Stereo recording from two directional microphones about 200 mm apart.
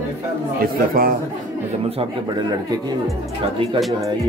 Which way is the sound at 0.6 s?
45° right (ahead or behind).